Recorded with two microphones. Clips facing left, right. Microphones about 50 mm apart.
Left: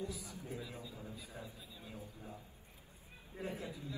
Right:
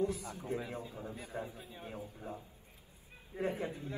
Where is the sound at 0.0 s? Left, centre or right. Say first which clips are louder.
Right 9 dB; right.